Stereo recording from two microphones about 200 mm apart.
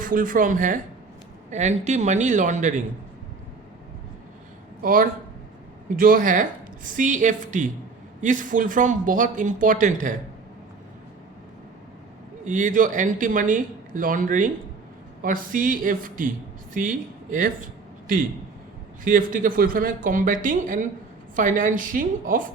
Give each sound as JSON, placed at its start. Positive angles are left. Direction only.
{"t": 0.0, "sound": "speech", "side_deg": -45}
{"t": 4.8, "sound": "speech", "side_deg": -45}
{"t": 12.5, "sound": "speech", "side_deg": -40}
{"t": 19.0, "sound": "speech", "side_deg": -40}